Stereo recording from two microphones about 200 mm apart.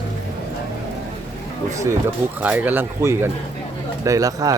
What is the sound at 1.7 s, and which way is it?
A man's voice, 15° right (ahead or behind).